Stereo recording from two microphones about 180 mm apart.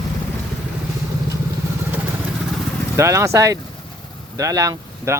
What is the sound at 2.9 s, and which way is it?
Speech, 15° right (ahead or behind).